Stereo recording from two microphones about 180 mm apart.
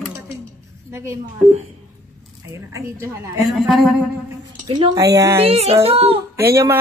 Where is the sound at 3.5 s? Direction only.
5° right (ahead or behind).